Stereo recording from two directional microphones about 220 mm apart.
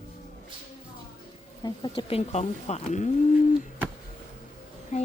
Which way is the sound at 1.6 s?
20° left (ahead or behind).